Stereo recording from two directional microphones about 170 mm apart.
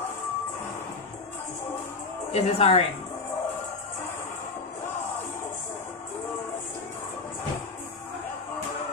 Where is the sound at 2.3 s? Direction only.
40° left (ahead or behind).